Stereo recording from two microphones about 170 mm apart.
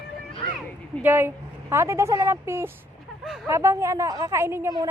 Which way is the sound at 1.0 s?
10° right (ahead or behind).